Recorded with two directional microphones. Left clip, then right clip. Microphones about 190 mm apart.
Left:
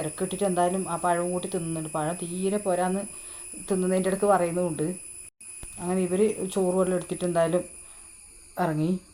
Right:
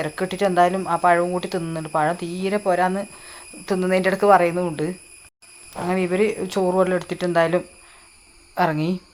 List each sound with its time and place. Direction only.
0.0 s speech: 15° right (ahead or behind)
5.9 s speech: 20° right (ahead or behind)